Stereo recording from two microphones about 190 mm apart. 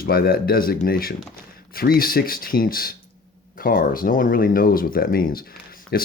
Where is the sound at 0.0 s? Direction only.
50° left (ahead or behind).